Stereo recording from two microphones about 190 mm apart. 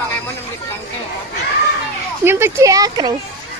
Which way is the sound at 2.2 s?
10° right (ahead or behind).